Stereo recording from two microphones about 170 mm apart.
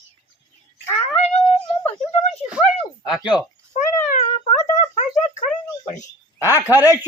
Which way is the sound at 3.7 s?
45° left (ahead or behind).